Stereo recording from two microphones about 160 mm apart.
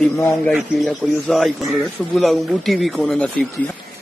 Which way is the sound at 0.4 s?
5° left (ahead or behind).